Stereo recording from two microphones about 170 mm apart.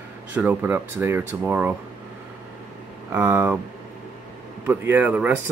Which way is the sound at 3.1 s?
10° right (ahead or behind).